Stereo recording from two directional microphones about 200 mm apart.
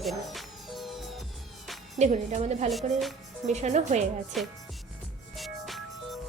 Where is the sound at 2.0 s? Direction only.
35° right (ahead or behind).